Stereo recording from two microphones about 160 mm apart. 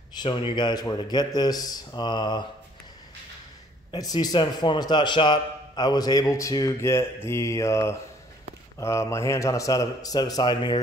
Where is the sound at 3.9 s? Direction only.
25° left (ahead or behind).